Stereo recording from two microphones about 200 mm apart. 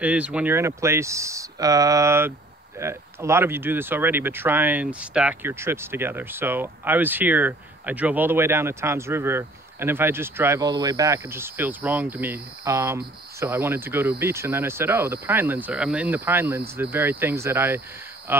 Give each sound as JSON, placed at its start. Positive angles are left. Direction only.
{"t": 0.0, "sound": "speech", "side_deg": -5}